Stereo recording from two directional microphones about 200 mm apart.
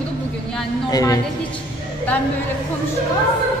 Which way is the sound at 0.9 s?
15° left (ahead or behind).